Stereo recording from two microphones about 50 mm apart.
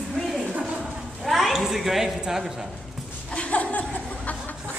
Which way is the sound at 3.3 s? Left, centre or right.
Left.